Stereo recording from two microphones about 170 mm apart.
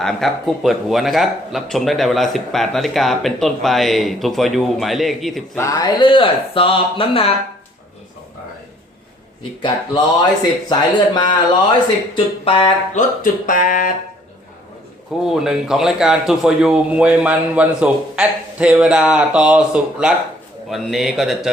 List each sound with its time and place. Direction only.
0.0 s a man's voice: centre (ahead or behind)
5.5 s speech: 20° left (ahead or behind); by 7.3 s 35° left (ahead or behind)
9.6 s speech: 25° left (ahead or behind)
13.0 s speech: 50° left (ahead or behind)
15.2 s a man's voice: 5° right (ahead or behind)